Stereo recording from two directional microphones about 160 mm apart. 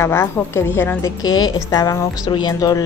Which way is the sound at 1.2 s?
25° left (ahead or behind).